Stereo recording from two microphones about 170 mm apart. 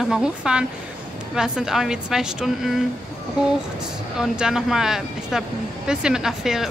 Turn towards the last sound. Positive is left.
turn(degrees=0)  # may be behind; listen again after turning